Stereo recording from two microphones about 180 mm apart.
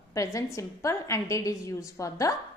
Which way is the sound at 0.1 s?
15° left (ahead or behind).